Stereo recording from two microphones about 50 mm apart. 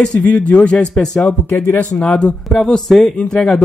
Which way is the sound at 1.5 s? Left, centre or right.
Left.